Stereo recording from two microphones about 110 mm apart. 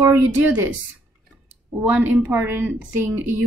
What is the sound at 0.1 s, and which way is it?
Speech, 15° right (ahead or behind).